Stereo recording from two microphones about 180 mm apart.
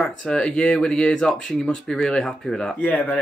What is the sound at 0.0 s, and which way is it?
Speech, 5° left (ahead or behind).